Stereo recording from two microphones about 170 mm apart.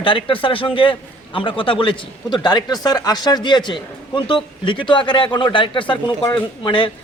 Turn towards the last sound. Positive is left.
turn(degrees=30)  # may be behind; listen again after turning